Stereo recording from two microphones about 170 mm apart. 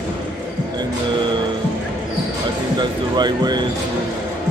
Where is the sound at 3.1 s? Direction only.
25° right (ahead or behind).